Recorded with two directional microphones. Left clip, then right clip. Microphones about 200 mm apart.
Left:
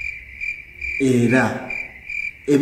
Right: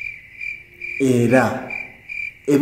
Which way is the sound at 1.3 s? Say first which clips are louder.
Right 2 dB; 20° left (ahead or behind).